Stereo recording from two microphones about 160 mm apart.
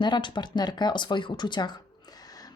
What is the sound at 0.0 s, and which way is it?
Speech, 30° left (ahead or behind).